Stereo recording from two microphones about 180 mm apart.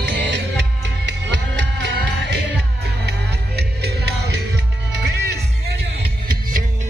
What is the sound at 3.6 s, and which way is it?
Music, 65° right (ahead or behind).